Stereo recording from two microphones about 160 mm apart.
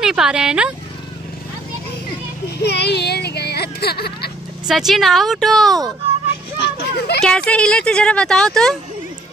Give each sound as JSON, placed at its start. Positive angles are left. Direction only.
{"t": 0.0, "sound": "speech", "side_deg": -5}
{"t": 2.6, "sound": "a sound", "side_deg": 90}
{"t": 4.6, "sound": "speech", "side_deg": 0}
{"t": 6.6, "sound": "a child's voice", "side_deg": 90}
{"t": 7.2, "sound": "speech", "side_deg": 5}